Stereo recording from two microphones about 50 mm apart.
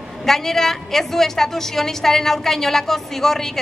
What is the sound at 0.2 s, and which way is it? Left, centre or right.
A woman's voice, centre.